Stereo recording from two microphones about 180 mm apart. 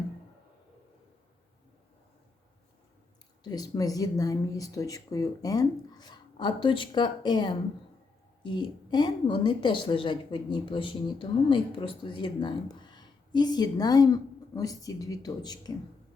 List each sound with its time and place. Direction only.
3.4 s a woman's voice: 20° left (ahead or behind)